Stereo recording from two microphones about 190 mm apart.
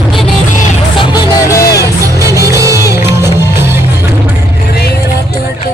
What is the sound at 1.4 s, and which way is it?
Music, 15° left (ahead or behind).